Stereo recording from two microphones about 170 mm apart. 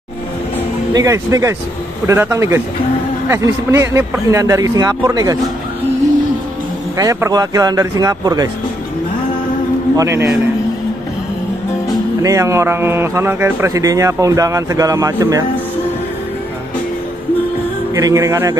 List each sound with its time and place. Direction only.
0.9 s speech: 20° right (ahead or behind)
7.0 s speech: 20° right (ahead or behind)
9.9 s speech: 15° right (ahead or behind)
12.2 s speech: 20° right (ahead or behind)
17.9 s speech: 20° right (ahead or behind)